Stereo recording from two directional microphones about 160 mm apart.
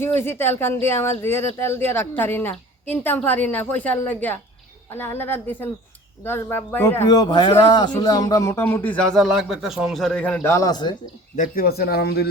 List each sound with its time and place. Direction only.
0.0 s speech: 15° left (ahead or behind)
11.3 s a man's voice: 65° left (ahead or behind); by 12.3 s 90° left